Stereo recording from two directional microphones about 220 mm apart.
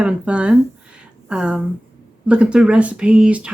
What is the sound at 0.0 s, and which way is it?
Speech, 5° right (ahead or behind).